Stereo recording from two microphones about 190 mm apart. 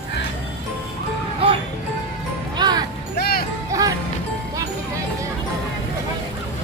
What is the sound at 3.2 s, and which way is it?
Music, 55° left (ahead or behind).